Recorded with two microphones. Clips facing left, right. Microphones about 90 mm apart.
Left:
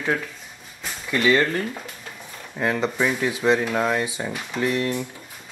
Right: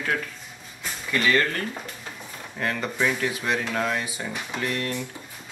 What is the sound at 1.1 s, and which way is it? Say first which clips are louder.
Speech: left 3 dB; 15° left (ahead or behind).